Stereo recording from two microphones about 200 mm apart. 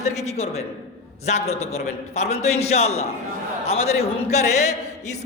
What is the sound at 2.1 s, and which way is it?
A man's voice, 35° left (ahead or behind).